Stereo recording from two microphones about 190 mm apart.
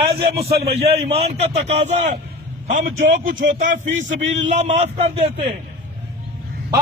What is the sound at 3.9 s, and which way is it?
Speech, 80° right.